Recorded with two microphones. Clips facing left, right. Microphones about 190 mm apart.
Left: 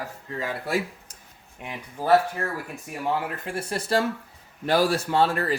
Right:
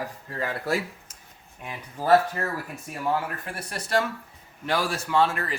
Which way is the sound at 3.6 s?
30° left (ahead or behind).